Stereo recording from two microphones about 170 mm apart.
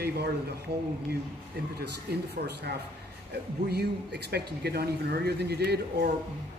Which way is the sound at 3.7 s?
75° right (ahead or behind).